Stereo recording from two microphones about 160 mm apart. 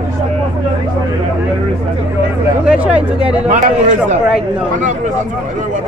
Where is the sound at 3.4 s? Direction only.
45° right (ahead or behind).